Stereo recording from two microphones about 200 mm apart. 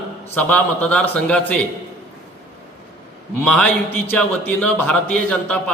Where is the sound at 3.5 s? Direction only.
5° left (ahead or behind).